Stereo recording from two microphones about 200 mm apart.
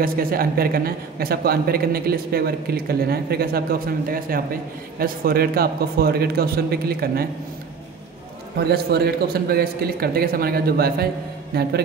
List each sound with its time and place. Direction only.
0.0 s a man's voice: 45° right (ahead or behind)
8.5 s a man's voice: 55° right (ahead or behind)